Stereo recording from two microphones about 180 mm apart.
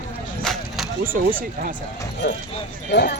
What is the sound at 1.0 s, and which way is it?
Speech, 50° right (ahead or behind).